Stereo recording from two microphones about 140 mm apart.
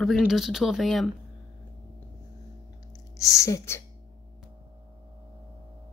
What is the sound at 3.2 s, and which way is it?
Speech, 25° left (ahead or behind).